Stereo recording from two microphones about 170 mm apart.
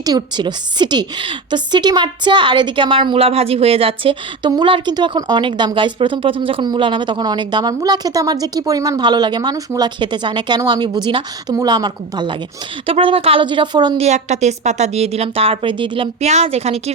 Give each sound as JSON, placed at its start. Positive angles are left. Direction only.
{"t": 0.0, "sound": "a woman's voice", "side_deg": -25}
{"t": 14.0, "sound": "a woman's voice", "side_deg": -40}